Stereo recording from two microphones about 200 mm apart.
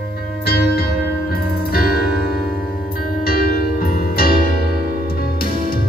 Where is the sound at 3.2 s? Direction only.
50° left (ahead or behind).